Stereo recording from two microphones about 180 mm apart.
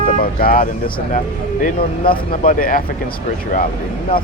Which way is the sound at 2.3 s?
50° left (ahead or behind).